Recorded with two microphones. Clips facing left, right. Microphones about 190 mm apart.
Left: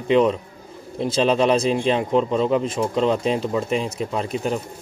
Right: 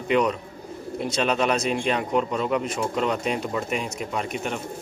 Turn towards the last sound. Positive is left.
turn(degrees=35)  # may be behind; listen again after turning